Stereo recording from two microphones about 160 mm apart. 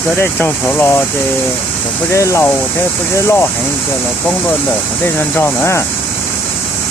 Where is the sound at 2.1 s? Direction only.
20° left (ahead or behind).